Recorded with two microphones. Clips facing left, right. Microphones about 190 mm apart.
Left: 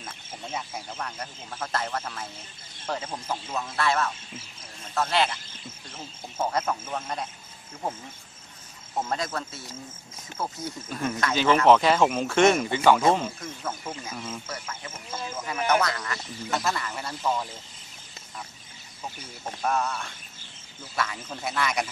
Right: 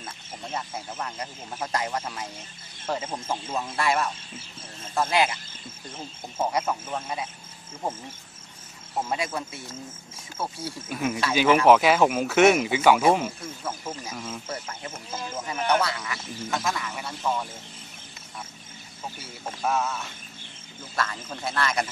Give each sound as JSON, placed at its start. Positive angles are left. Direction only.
{"t": 0.9, "sound": "speech", "side_deg": -10}
{"t": 3.3, "sound": "speech", "side_deg": -20}
{"t": 8.9, "sound": "speech", "side_deg": -10}
{"t": 15.3, "sound": "speech", "side_deg": -25}
{"t": 15.8, "sound": "a man's voice", "side_deg": -5}
{"t": 19.6, "sound": "a man's voice", "side_deg": 0}